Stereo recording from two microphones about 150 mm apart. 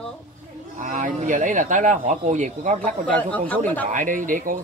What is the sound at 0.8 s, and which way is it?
Speech, 60° right (ahead or behind).